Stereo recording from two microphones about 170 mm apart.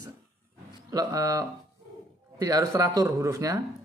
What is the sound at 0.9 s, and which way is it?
Speech, 20° right (ahead or behind).